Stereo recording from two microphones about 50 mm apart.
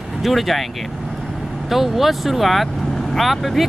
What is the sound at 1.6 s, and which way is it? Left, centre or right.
Speech, centre.